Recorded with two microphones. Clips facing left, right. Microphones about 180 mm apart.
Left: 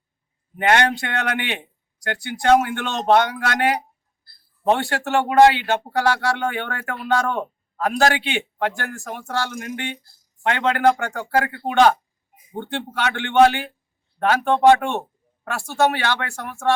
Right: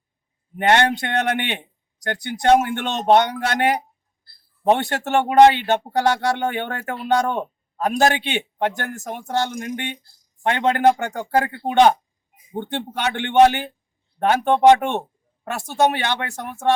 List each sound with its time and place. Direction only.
0.7 s speech: 20° right (ahead or behind)